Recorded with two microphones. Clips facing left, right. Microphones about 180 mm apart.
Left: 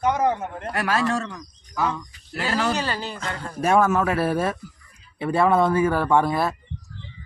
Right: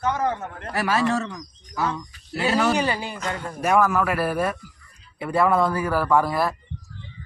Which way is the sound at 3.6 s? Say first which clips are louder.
Left 1 dB; 25° left (ahead or behind).